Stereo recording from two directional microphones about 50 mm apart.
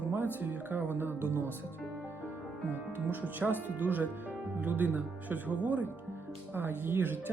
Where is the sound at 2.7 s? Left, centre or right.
Right.